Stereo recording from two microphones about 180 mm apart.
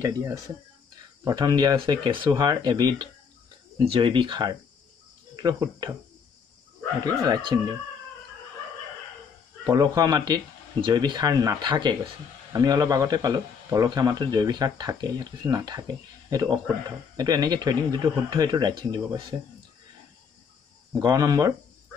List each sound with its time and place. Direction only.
0.0 s speech: 15° right (ahead or behind)
7.2 s speech: 25° right (ahead or behind)
9.7 s speech: 25° right (ahead or behind)
21.0 s speech: 20° right (ahead or behind)